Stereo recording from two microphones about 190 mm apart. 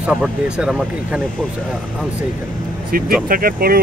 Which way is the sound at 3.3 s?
50° right (ahead or behind).